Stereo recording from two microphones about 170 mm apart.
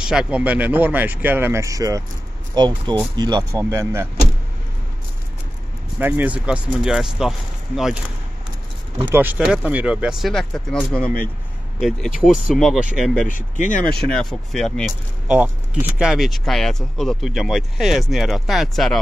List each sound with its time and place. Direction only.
0.1 s speech: 5° right (ahead or behind)
5.9 s speech: 10° right (ahead or behind)
9.0 s speech: 10° right (ahead or behind); by 11.1 s 5° left (ahead or behind)
12.3 s speech: centre (ahead or behind)
13.3 s speech: 50° left (ahead or behind)
13.9 s speech: 5° left (ahead or behind)